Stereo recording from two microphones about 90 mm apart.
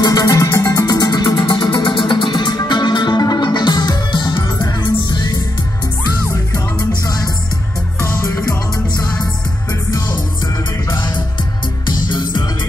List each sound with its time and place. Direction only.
0.0 s music: 45° left (ahead or behind)
8.0 s music: 30° left (ahead or behind)
9.8 s music: 45° left (ahead or behind)